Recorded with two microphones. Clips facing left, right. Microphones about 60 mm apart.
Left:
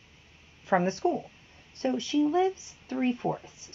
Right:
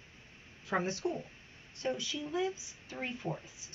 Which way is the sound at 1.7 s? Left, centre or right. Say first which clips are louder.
Left 10 dB; left.